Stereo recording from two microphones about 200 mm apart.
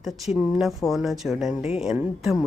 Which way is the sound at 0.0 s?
Centre (ahead or behind).